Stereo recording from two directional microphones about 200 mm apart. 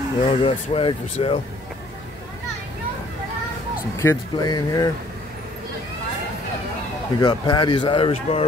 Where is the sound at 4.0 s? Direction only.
15° left (ahead or behind).